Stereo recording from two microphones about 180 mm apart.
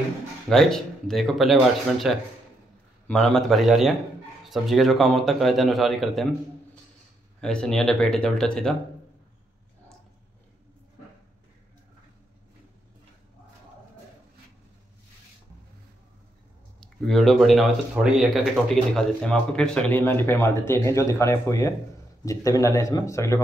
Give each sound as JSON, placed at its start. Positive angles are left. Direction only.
{"t": 0.5, "sound": "speech", "side_deg": 0}
{"t": 7.3, "sound": "speech", "side_deg": 5}
{"t": 16.8, "sound": "speech", "side_deg": 0}
{"t": 18.9, "sound": "speech", "side_deg": 5}